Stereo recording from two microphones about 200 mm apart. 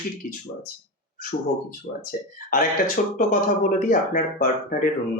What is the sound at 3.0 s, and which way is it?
Speech, 45° left (ahead or behind).